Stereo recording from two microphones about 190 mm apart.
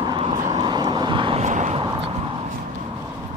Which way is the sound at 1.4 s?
40° right (ahead or behind).